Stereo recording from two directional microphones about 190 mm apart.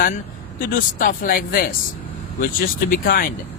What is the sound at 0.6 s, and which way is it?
Speech, 45° left (ahead or behind).